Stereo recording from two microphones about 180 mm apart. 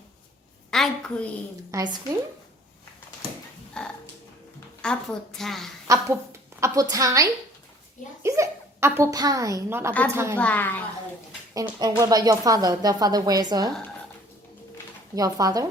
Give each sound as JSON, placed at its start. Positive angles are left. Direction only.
{"t": 0.7, "sound": "a woman's voice", "side_deg": 5}
{"t": 1.7, "sound": "speech", "side_deg": -20}
{"t": 3.8, "sound": "music", "side_deg": 5}
{"t": 4.8, "sound": "a woman's voice", "side_deg": 5}
{"t": 5.9, "sound": "a woman's voice", "side_deg": -20}
{"t": 10.3, "sound": "a woman's voice", "side_deg": 10}
{"t": 11.5, "sound": "speech", "side_deg": -20}
{"t": 15.1, "sound": "speech", "side_deg": -20}